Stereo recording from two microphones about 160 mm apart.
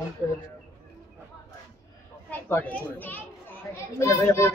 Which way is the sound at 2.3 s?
10° left (ahead or behind).